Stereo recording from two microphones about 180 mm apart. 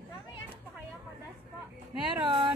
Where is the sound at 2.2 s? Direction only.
30° right (ahead or behind).